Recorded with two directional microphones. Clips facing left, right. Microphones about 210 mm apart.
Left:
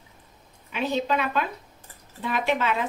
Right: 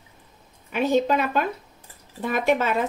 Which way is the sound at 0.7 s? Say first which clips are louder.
Right 5 dB; 45° right (ahead or behind).